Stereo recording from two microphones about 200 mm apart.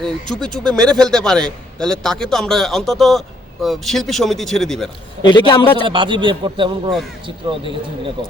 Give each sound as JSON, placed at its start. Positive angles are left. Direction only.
{"t": 0.0, "sound": "a man's voice", "side_deg": 5}
{"t": 5.2, "sound": "a man's voice", "side_deg": 20}
{"t": 5.8, "sound": "a man's voice", "side_deg": -25}